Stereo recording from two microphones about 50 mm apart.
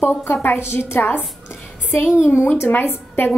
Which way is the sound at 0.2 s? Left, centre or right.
Left.